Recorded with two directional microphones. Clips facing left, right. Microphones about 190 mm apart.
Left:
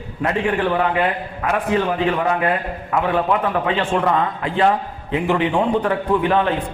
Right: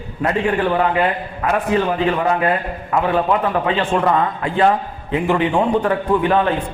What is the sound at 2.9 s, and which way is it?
A man's voice, 30° right (ahead or behind).